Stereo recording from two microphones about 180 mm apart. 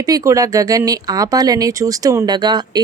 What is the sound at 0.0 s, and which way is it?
Speech, 20° right (ahead or behind).